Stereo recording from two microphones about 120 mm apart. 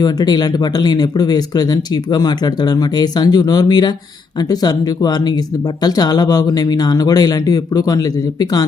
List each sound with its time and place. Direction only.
0.0 s speech: 35° left (ahead or behind)